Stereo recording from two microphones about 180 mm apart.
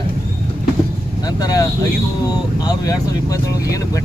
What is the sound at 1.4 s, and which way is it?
Speech, 20° left (ahead or behind).